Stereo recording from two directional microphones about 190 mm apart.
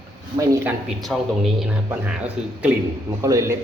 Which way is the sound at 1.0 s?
Centre (ahead or behind).